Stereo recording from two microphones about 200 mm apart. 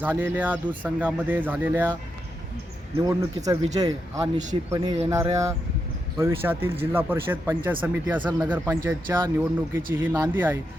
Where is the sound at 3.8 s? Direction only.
20° right (ahead or behind).